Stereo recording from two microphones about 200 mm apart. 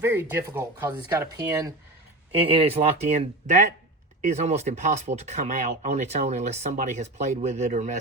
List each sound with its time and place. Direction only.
0.0 s speech: 10° right (ahead or behind)
2.3 s speech: 30° right (ahead or behind)